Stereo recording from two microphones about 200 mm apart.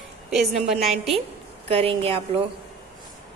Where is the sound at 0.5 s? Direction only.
35° right (ahead or behind).